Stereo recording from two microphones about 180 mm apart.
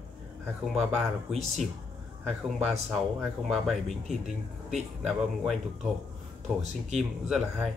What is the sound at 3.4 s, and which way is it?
Speech, centre (ahead or behind).